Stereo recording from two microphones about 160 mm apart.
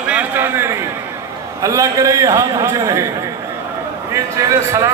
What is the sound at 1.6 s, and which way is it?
A man's voice, 20° right (ahead or behind).